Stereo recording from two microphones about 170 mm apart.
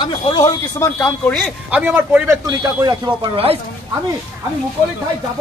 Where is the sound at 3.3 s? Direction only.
35° right (ahead or behind).